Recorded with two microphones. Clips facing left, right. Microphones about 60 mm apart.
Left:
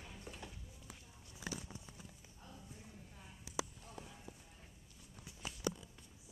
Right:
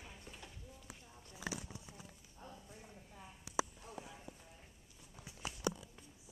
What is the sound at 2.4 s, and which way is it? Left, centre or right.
Clip-clop, right.